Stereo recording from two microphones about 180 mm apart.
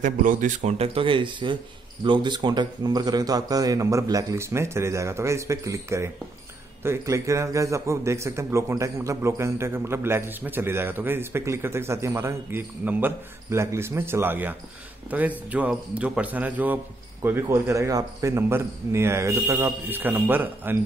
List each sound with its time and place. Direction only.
0.0 s a man's voice: 45° right (ahead or behind); by 20.7 s 10° right (ahead or behind)